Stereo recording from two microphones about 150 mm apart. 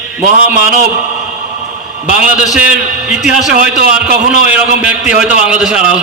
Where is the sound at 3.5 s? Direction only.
70° right (ahead or behind).